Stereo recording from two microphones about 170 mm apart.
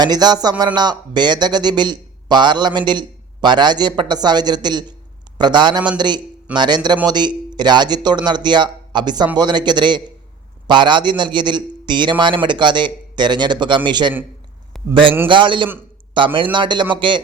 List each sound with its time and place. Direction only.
0.0 s a man's voice: 25° right (ahead or behind)
15.3 s a man's voice: 30° right (ahead or behind)